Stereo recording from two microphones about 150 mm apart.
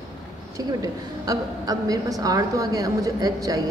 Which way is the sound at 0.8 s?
25° right (ahead or behind).